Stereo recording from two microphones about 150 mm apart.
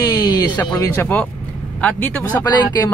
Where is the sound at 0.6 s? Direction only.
15° left (ahead or behind).